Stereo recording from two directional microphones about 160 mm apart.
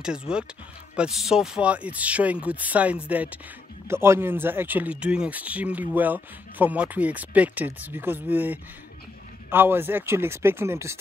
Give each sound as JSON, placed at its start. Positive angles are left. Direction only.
{"t": 0.9, "sound": "speech", "side_deg": -5}